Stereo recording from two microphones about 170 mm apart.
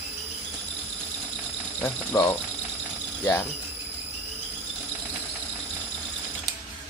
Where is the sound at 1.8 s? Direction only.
10° left (ahead or behind).